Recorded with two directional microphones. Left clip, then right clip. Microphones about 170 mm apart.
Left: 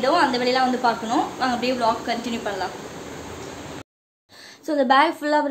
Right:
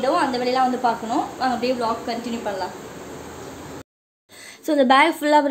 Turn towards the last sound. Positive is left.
turn(degrees=-15)  # may be behind; listen again after turning